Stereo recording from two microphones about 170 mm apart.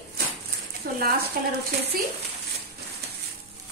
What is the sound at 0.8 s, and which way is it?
Speech, 55° right (ahead or behind).